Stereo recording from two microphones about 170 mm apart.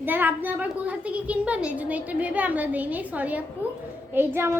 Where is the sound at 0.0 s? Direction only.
10° right (ahead or behind).